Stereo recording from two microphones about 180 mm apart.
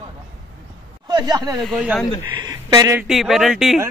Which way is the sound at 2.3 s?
20° right (ahead or behind).